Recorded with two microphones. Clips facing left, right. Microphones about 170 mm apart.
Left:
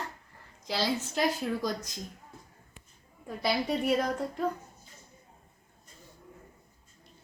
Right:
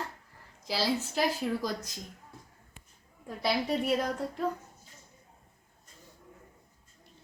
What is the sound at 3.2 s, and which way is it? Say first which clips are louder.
A woman's voice: even; centre (ahead or behind).